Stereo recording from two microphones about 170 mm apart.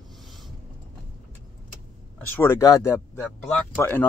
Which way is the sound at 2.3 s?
15° left (ahead or behind).